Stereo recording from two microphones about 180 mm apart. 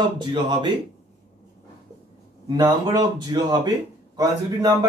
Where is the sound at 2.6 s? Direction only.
20° right (ahead or behind).